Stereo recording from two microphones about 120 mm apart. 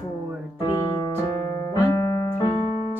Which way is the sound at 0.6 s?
35° left (ahead or behind).